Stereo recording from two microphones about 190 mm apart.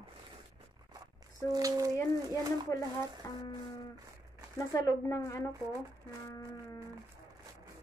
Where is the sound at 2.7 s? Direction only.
15° left (ahead or behind).